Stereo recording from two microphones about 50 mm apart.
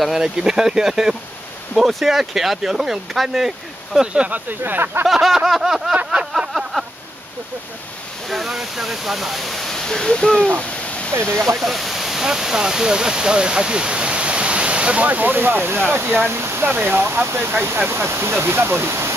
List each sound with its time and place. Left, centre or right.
0.0 s speech: centre
4.1 s speech: right
4.5 s speech: right
5.0 s speech: centre
6.5 s a sound: centre
8.3 s speech: centre
11.6 s speech: centre; by 15.0 s right
15.0 s speech: right
16.6 s speech: right
17.8 s speech: right